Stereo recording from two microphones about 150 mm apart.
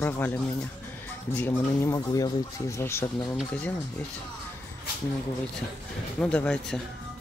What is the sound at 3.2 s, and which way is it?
Speech, centre (ahead or behind).